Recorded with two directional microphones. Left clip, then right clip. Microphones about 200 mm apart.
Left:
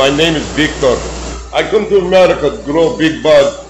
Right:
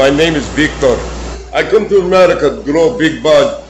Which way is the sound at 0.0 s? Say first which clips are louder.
Right 1 dB; 10° right (ahead or behind).